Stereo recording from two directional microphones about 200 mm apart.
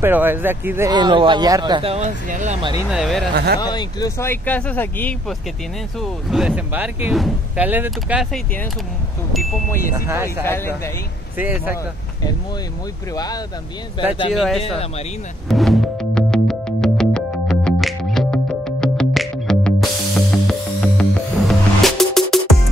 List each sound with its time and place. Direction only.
0.0 s a man's voice: 10° right (ahead or behind); by 2.6 s 40° right (ahead or behind)
2.8 s speech: 5° right (ahead or behind)
3.5 s speech: 20° left (ahead or behind)
5.9 s speech: centre (ahead or behind)
9.9 s speech: 15° right (ahead or behind)
10.4 s speech: 10° left (ahead or behind)
11.3 s speech: 10° right (ahead or behind)
13.1 s speech: 20° left (ahead or behind)
14.3 s speech: centre (ahead or behind)
14.6 s speech: 30° left (ahead or behind)
15.4 s music: centre (ahead or behind)